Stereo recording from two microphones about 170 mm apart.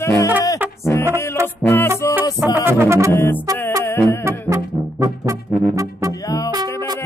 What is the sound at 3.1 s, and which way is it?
Music, 15° left (ahead or behind).